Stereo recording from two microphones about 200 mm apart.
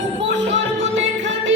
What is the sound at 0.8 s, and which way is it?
Music, 70° right (ahead or behind).